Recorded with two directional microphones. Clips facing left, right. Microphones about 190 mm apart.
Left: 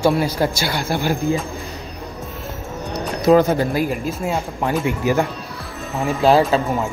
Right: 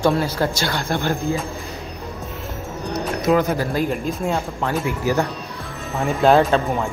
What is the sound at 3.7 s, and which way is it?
Speech, 5° left (ahead or behind).